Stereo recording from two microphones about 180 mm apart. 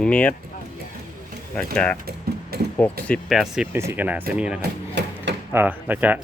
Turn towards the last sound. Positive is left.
turn(degrees=-10)  # may be behind; listen again after turning